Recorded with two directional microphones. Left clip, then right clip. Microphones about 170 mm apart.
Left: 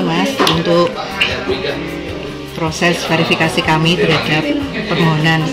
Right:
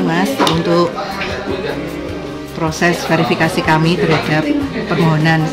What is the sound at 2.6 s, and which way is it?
Speech, 15° right (ahead or behind).